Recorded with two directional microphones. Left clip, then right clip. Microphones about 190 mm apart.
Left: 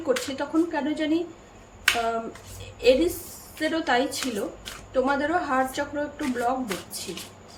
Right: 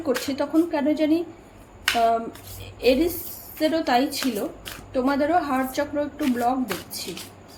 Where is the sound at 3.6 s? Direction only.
20° right (ahead or behind).